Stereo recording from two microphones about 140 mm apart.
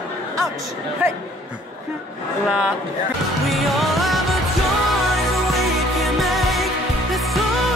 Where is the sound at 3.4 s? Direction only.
Centre (ahead or behind).